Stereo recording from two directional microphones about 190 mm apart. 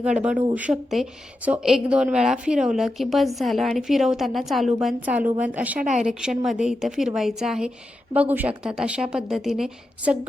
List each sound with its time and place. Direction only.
0.0 s a woman's voice: 5° right (ahead or behind)
5.8 s a woman's voice: 40° right (ahead or behind)
6.1 s a woman's voice: 5° right (ahead or behind)